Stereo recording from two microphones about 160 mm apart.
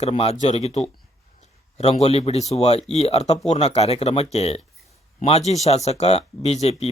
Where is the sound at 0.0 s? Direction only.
40° left (ahead or behind).